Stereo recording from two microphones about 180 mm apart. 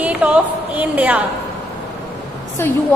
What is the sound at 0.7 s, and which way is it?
Speech, 10° right (ahead or behind).